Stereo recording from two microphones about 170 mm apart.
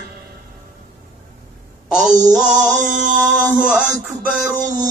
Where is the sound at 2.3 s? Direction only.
5° right (ahead or behind).